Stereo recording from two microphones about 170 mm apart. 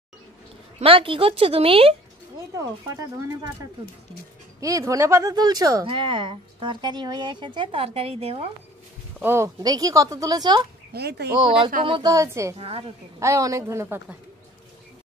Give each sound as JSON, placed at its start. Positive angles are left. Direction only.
{"t": 0.7, "sound": "speech", "side_deg": -30}
{"t": 4.6, "sound": "speech", "side_deg": -20}
{"t": 9.2, "sound": "speech", "side_deg": -15}
{"t": 10.9, "sound": "speech", "side_deg": -75}
{"t": 11.3, "sound": "speech", "side_deg": -30}
{"t": 12.5, "sound": "speech", "side_deg": -35}
{"t": 13.2, "sound": "a woman's voice", "side_deg": -20}